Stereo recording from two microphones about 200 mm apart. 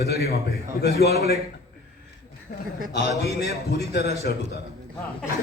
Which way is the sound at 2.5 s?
45° left (ahead or behind).